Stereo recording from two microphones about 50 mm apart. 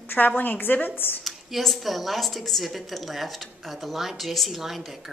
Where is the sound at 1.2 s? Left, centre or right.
Centre.